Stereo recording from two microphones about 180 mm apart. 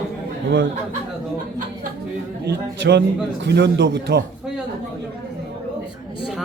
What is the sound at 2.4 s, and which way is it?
Speech, 70° right (ahead or behind).